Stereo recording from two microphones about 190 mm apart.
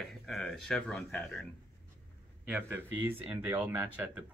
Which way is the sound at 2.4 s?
10° right (ahead or behind).